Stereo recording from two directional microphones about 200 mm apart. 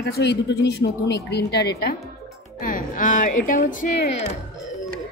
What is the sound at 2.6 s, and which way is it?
A woman's voice, 40° left (ahead or behind).